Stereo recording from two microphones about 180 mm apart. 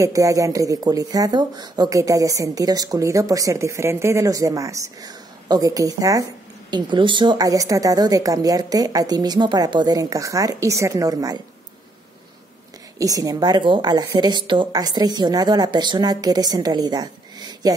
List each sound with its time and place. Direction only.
0.0 s speech: 20° right (ahead or behind)
13.0 s speech: 20° right (ahead or behind)